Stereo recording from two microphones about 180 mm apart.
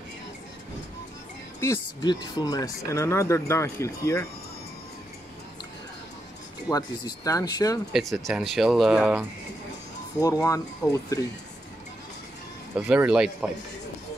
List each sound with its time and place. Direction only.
1.6 s speech: 20° left (ahead or behind)
6.7 s speech: 20° left (ahead or behind)
7.9 s speech: centre (ahead or behind)
10.2 s speech: 20° left (ahead or behind)
12.7 s speech: 5° right (ahead or behind)